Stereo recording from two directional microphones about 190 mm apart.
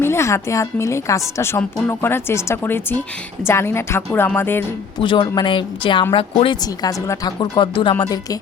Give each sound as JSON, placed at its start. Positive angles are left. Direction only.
{"t": 0.0, "sound": "speech", "side_deg": 15}
{"t": 4.9, "sound": "a woman's voice", "side_deg": 25}